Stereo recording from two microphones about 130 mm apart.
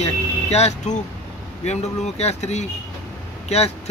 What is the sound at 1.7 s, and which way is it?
Speech, 55° left (ahead or behind).